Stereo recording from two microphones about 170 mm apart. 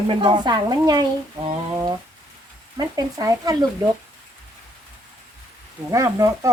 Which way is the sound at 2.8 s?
20° right (ahead or behind).